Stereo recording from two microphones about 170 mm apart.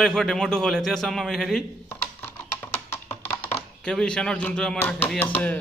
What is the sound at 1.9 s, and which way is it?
Computer keyboard, 15° left (ahead or behind).